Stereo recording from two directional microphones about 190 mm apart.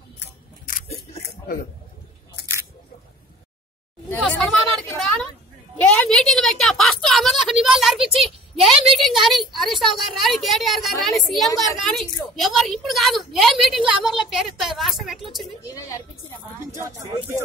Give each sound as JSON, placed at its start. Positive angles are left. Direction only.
{"t": 0.2, "sound": "camera", "side_deg": 50}
{"t": 4.2, "sound": "a sound", "side_deg": 0}
{"t": 5.8, "sound": "a woman's voice", "side_deg": 5}
{"t": 16.7, "sound": "speech", "side_deg": -15}